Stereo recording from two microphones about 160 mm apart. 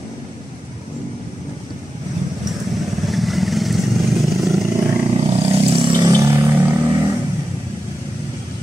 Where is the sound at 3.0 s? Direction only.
Centre (ahead or behind).